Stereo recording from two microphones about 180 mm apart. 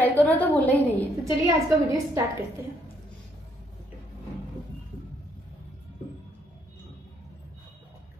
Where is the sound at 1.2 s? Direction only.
15° right (ahead or behind).